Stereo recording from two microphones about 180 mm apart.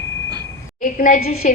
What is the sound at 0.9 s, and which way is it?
Speech, 45° left (ahead or behind).